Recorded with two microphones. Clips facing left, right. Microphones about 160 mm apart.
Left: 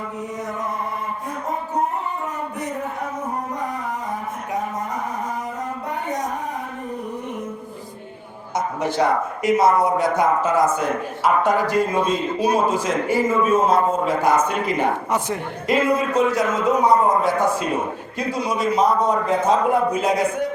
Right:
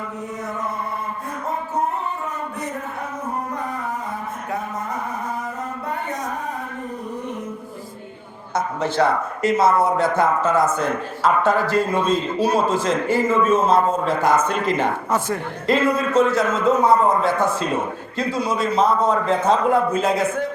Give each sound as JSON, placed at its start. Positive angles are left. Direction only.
{"t": 8.5, "sound": "a man's voice", "side_deg": 15}